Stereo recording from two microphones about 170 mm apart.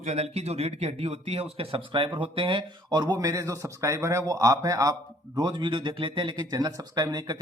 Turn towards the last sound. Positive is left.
turn(degrees=-20)  # may be behind; listen again after turning